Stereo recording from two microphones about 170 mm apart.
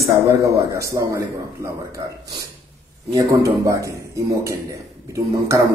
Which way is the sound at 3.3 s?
20° right (ahead or behind).